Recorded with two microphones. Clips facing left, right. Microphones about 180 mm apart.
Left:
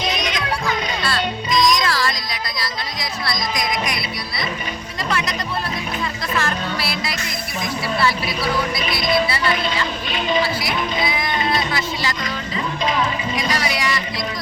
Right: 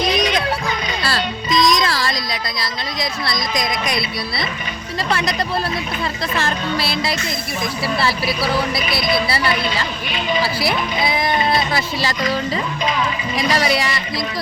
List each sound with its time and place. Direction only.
0.1 s music: 35° right (ahead or behind)
2.6 s speech: 25° right (ahead or behind)
6.3 s speech: 25° right (ahead or behind)
13.3 s speech: 35° right (ahead or behind)